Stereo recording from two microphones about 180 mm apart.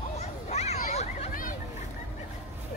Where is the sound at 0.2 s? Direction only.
40° left (ahead or behind).